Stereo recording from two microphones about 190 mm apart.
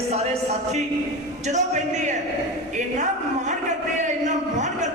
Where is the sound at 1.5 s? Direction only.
40° right (ahead or behind).